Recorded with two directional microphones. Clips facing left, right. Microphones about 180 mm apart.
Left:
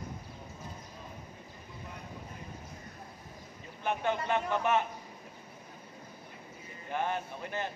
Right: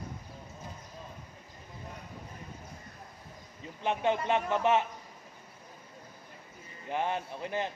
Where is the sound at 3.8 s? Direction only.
25° right (ahead or behind).